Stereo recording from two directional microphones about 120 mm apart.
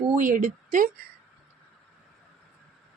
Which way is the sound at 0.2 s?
90° right.